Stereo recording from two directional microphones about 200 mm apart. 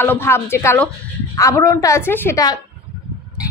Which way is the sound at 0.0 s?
10° left (ahead or behind).